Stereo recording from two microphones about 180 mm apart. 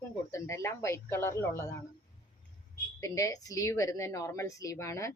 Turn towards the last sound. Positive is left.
turn(degrees=15)  # may be behind; listen again after turning